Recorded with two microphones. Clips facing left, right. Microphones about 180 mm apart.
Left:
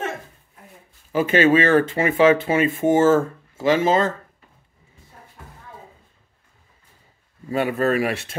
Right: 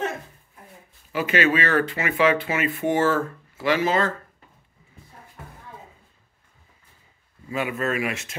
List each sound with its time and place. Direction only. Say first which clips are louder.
1.1 s speech: left 6 dB; 30° left (ahead or behind)
7.4 s speech: left 6 dB; 35° left (ahead or behind)